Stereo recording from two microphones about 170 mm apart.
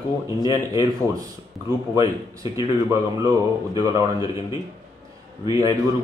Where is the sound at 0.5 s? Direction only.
20° right (ahead or behind).